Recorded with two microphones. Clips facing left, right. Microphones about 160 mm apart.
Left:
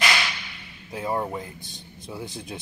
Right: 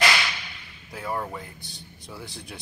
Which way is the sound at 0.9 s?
20° left (ahead or behind).